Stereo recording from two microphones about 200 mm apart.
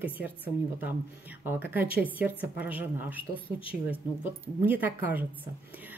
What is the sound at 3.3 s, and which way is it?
Speech, 25° left (ahead or behind).